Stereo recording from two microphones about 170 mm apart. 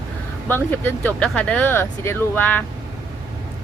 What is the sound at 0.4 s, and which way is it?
Speech, 10° left (ahead or behind).